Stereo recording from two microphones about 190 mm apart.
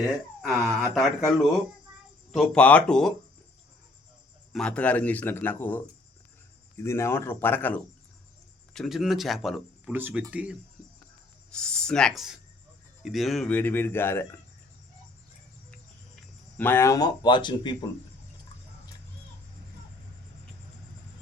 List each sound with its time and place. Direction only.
0.0 s speech: centre (ahead or behind)
4.5 s speech: 5° left (ahead or behind)
11.5 s speech: 5° left (ahead or behind)
16.6 s speech: 10° left (ahead or behind)